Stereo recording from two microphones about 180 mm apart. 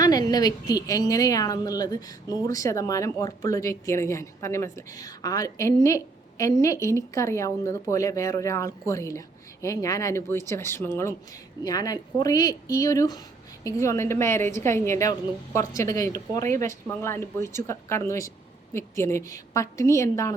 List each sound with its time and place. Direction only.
0.0 s a woman's voice: 20° left (ahead or behind)